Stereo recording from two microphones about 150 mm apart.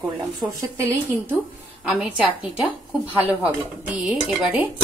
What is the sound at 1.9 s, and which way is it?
Speech, 5° right (ahead or behind).